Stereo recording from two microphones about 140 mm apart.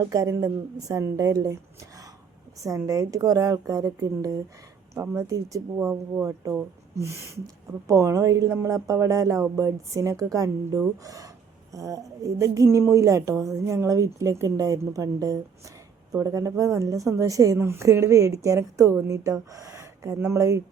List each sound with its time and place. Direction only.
0.1 s a woman's voice: 25° right (ahead or behind)
2.6 s a woman's voice: 25° right (ahead or behind)